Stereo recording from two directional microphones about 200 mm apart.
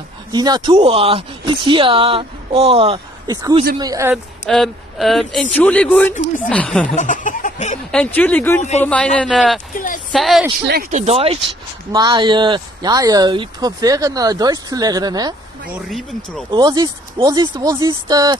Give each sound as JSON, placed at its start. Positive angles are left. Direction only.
{"t": 0.3, "sound": "speech", "side_deg": -20}
{"t": 4.5, "sound": "speech", "side_deg": 0}
{"t": 6.1, "sound": "speech", "side_deg": 40}
{"t": 6.5, "sound": "speech", "side_deg": 5}
{"t": 7.0, "sound": "a sound", "side_deg": 40}
{"t": 7.9, "sound": "speech", "side_deg": 5}
{"t": 10.9, "sound": "speech", "side_deg": -35}
{"t": 11.9, "sound": "speech", "side_deg": -20}
{"t": 16.4, "sound": "speech", "side_deg": -20}